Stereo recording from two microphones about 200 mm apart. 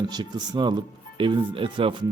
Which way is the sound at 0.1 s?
20° right (ahead or behind).